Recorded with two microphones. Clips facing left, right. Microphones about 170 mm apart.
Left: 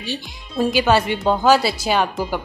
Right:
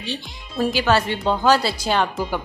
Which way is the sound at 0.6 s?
15° left (ahead or behind).